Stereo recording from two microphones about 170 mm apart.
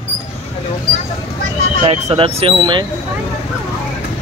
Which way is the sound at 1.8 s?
35° right (ahead or behind).